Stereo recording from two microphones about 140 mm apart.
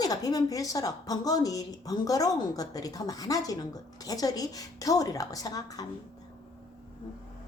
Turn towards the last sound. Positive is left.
turn(degrees=25)  # may be behind; listen again after turning